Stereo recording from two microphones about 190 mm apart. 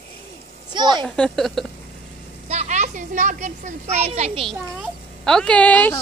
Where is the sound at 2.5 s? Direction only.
35° right (ahead or behind).